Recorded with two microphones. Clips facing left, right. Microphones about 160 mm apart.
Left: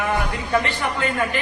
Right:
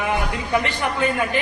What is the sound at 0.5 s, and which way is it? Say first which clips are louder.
Speech: even; 15° right (ahead or behind).